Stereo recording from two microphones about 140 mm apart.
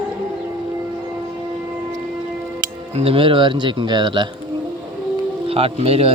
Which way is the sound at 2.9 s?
45° right (ahead or behind).